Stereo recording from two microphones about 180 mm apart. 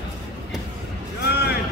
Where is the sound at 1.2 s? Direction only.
65° left (ahead or behind).